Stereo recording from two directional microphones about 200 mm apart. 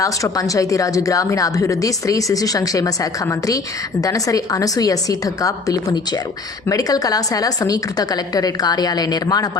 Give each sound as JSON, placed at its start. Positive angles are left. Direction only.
{"t": 0.0, "sound": "a woman's voice", "side_deg": 15}